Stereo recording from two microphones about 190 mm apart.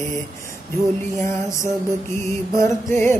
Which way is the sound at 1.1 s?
15° left (ahead or behind).